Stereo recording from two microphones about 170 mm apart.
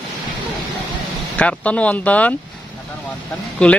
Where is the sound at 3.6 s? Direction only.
5° left (ahead or behind).